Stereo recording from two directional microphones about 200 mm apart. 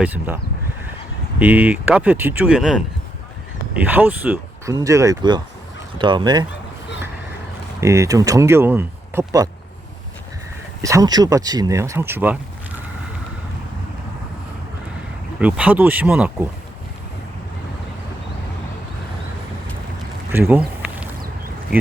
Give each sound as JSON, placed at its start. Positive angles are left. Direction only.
{"t": 0.0, "sound": "speech", "side_deg": -5}
{"t": 1.4, "sound": "speech", "side_deg": -5}
{"t": 7.8, "sound": "speech", "side_deg": -15}
{"t": 10.8, "sound": "speech", "side_deg": -15}
{"t": 15.4, "sound": "speech", "side_deg": -5}
{"t": 20.3, "sound": "a sound", "side_deg": -10}